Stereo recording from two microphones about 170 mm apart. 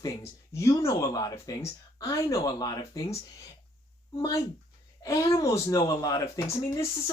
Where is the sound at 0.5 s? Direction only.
15° left (ahead or behind).